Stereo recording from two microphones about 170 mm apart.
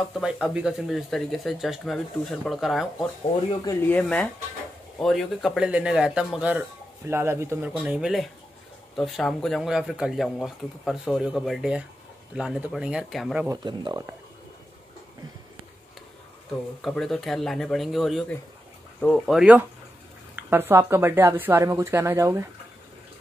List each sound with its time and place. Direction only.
0.1 s speech: 5° right (ahead or behind)
3.6 s speech: 10° left (ahead or behind)
13.5 s speech: 25° right (ahead or behind)
16.8 s speech: centre (ahead or behind); by 22.5 s 15° right (ahead or behind)